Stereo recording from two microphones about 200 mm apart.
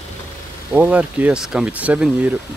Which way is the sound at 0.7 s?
10° right (ahead or behind).